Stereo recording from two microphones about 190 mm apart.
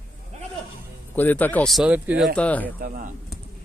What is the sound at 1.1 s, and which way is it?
A man's voice, 10° left (ahead or behind).